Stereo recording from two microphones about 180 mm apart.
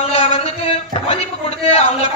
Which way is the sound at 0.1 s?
35° left (ahead or behind).